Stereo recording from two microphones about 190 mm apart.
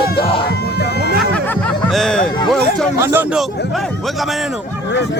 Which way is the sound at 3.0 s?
15° right (ahead or behind).